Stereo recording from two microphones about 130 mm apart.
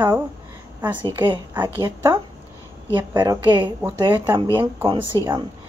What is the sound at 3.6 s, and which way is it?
Speech, 15° right (ahead or behind).